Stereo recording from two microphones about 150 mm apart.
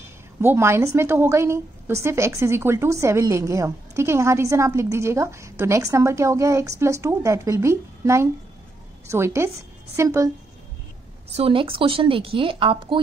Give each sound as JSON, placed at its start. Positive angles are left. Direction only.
{"t": 0.4, "sound": "a woman's voice", "side_deg": -15}
{"t": 11.3, "sound": "speech", "side_deg": -40}